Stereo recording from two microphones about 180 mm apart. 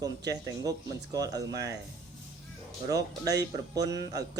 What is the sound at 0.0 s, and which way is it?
Speech, 20° right (ahead or behind).